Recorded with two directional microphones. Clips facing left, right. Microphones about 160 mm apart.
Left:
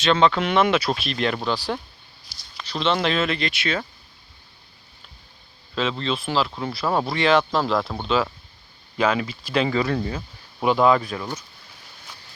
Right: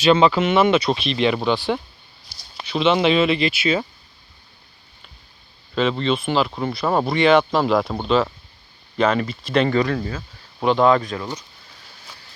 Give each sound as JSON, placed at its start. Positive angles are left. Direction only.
{"t": 0.0, "sound": "speech", "side_deg": -10}
{"t": 5.7, "sound": "speech", "side_deg": 0}
{"t": 9.9, "sound": "speech", "side_deg": 20}
{"t": 10.6, "sound": "speech", "side_deg": 5}